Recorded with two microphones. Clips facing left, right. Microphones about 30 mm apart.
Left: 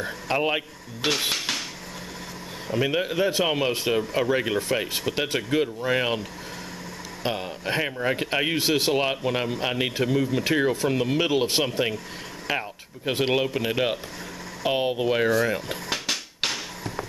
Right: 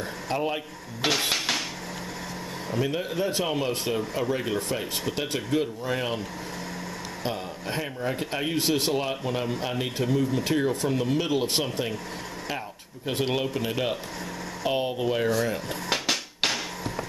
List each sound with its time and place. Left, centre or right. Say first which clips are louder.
0.3 s speech: left 4 dB; centre
1.0 s dishes: even; centre
2.8 s speech: left 4 dB; left
7.2 s speech: left 5 dB; left
8.5 s speech: even; centre
15.9 s a sound: right 3 dB; centre